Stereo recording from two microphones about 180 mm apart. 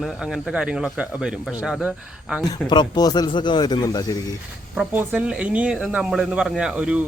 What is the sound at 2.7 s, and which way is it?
Speech, 25° left (ahead or behind).